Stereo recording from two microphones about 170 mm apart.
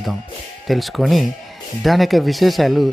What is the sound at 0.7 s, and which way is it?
Speech, centre (ahead or behind).